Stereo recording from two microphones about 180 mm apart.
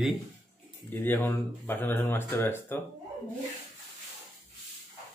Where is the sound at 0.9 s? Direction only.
10° left (ahead or behind).